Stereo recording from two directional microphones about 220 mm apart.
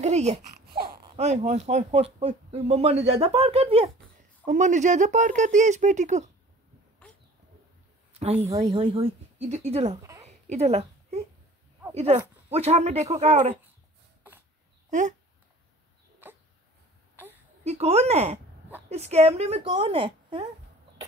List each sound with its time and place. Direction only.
0.0 s babbling: 30° right (ahead or behind)
0.8 s speech: 25° right (ahead or behind)
8.1 s a woman's voice: 30° right (ahead or behind)
8.5 s speech: 15° right (ahead or behind)
10.2 s a sound: 30° right (ahead or behind)
11.9 s speech: 30° right (ahead or behind)
14.9 s speech: 35° right (ahead or behind)
16.2 s dog: 10° right (ahead or behind)
17.6 s speech: 30° right (ahead or behind)